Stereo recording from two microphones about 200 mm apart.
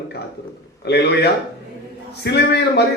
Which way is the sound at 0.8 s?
55° left (ahead or behind).